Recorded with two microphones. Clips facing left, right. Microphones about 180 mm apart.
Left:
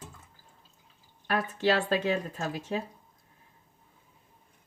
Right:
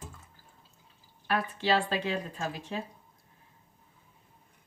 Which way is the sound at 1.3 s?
45° left (ahead or behind).